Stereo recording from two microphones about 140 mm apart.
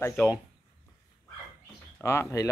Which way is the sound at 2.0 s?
20° left (ahead or behind).